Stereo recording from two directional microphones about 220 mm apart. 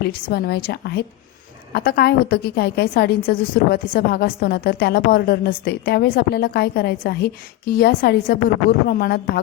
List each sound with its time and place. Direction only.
0.0 s a woman's voice: 45° left (ahead or behind)